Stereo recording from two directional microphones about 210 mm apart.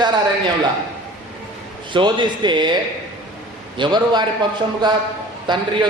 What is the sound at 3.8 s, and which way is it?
Speech, 20° right (ahead or behind).